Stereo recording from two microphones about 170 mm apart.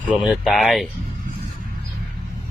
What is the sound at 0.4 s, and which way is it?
Speech, centre (ahead or behind).